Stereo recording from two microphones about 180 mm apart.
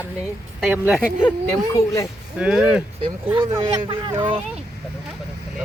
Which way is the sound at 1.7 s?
15° left (ahead or behind).